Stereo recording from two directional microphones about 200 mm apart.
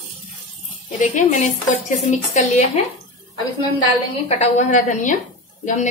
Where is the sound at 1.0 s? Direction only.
40° left (ahead or behind).